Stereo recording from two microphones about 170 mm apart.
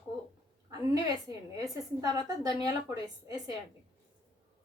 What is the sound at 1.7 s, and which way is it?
Speech, 20° right (ahead or behind).